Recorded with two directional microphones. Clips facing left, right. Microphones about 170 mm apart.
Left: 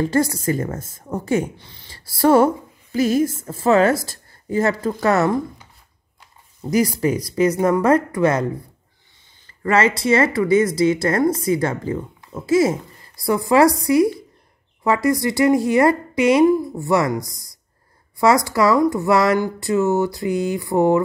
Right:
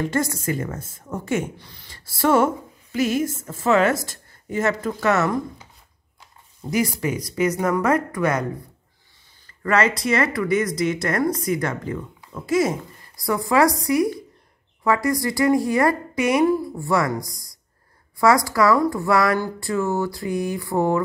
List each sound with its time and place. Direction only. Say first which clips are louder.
0.0 s a woman's voice: left 4 dB; 35° left (ahead or behind)
2.0 s a woman's voice: left 4 dB; 35° left (ahead or behind)
6.7 s a woman's voice: left 4 dB; 35° left (ahead or behind)
9.6 s speech: left 2 dB; 30° left (ahead or behind)
17.3 s speech: right 1 dB; centre (ahead or behind)
18.2 s speech: left 1 dB; 25° left (ahead or behind)